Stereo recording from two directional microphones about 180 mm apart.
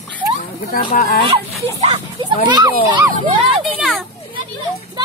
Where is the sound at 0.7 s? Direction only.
50° left (ahead or behind).